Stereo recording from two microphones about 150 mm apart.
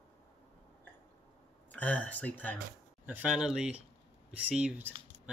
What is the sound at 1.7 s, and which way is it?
Speech, 10° left (ahead or behind).